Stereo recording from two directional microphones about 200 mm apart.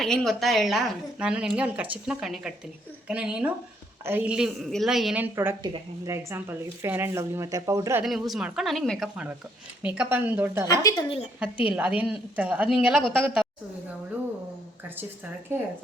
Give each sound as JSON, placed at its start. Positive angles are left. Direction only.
{"t": 0.0, "sound": "a woman's voice", "side_deg": 0}
{"t": 8.0, "sound": "a woman's voice", "side_deg": 0}
{"t": 10.7, "sound": "a woman's voice", "side_deg": 20}
{"t": 11.3, "sound": "a woman's voice", "side_deg": -5}